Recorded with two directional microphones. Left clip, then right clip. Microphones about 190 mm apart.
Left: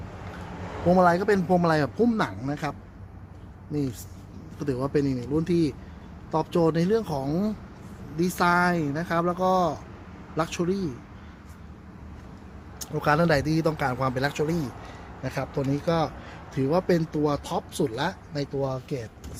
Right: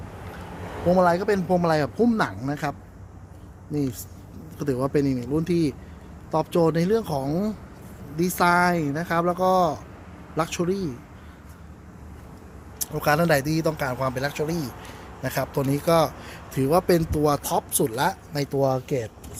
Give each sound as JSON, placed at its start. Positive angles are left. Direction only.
{"t": 0.9, "sound": "speech", "side_deg": 0}
{"t": 2.0, "sound": "speech", "side_deg": -25}
{"t": 12.8, "sound": "speech", "side_deg": -5}
{"t": 15.2, "sound": "speech", "side_deg": -25}
{"t": 18.5, "sound": "speech", "side_deg": -60}